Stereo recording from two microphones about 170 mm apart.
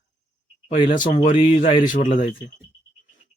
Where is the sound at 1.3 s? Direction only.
35° left (ahead or behind).